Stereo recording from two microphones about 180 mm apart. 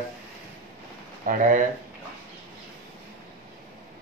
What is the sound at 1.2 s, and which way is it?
Speech, 45° right (ahead or behind).